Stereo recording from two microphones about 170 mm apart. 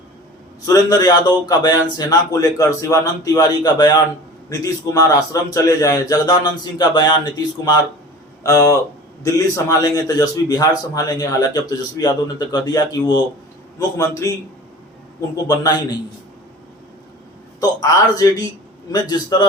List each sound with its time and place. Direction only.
0.6 s speech: 20° left (ahead or behind)
15.4 s speech: 20° left (ahead or behind)
17.6 s speech: 20° left (ahead or behind)